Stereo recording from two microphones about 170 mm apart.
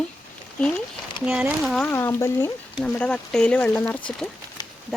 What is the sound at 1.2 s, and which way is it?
Speech, 5° right (ahead or behind).